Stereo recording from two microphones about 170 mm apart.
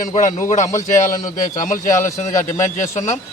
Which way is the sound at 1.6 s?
50° left (ahead or behind).